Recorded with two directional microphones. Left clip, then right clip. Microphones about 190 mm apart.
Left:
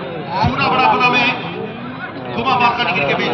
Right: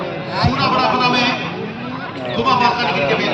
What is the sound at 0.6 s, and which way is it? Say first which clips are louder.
Speech: left 3 dB; 25° right (ahead or behind).